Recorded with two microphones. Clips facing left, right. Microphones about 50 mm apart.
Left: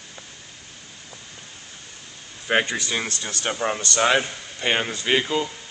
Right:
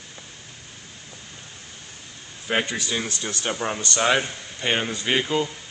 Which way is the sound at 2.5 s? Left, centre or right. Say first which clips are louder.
Left 3 dB; centre.